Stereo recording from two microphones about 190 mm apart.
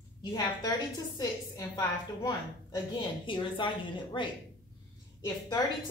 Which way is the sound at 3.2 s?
25° left (ahead or behind).